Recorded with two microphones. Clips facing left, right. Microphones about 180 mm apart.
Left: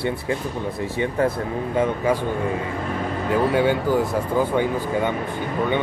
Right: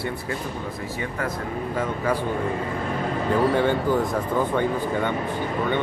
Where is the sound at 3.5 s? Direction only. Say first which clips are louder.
Left 2 dB; 10° left (ahead or behind).